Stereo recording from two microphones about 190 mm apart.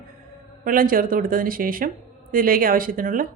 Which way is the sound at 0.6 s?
50° right (ahead or behind).